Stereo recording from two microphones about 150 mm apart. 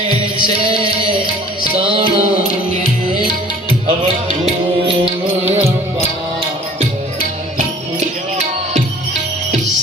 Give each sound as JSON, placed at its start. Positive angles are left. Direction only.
{"t": 1.8, "sound": "music", "side_deg": -35}
{"t": 4.4, "sound": "music", "side_deg": -40}